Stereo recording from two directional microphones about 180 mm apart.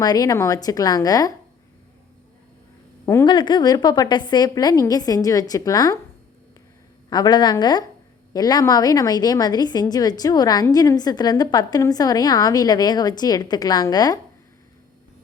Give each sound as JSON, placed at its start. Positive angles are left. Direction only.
{"t": 0.0, "sound": "a woman's voice", "side_deg": 20}
{"t": 3.2, "sound": "a woman's voice", "side_deg": 25}
{"t": 7.1, "sound": "a woman's voice", "side_deg": 25}